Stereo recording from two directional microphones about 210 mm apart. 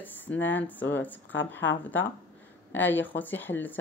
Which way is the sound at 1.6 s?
65° left (ahead or behind).